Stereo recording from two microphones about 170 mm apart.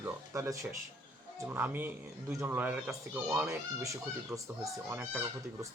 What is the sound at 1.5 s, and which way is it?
Speech, 10° right (ahead or behind).